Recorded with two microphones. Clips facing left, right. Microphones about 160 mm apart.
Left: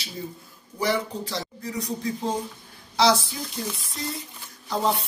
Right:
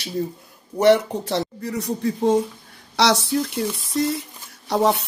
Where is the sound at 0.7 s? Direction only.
70° right (ahead or behind).